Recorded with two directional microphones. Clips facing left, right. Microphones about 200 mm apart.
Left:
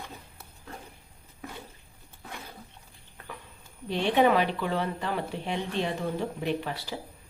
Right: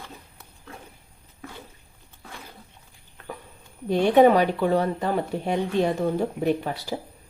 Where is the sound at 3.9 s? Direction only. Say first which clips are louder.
Right 7 dB; 45° right (ahead or behind).